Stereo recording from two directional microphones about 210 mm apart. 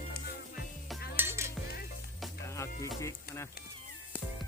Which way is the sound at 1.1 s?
10° right (ahead or behind).